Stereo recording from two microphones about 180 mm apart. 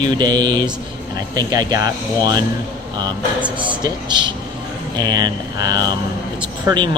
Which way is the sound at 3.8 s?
25° right (ahead or behind).